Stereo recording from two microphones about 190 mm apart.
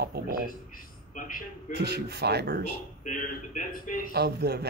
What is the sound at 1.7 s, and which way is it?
Speech, 60° right (ahead or behind).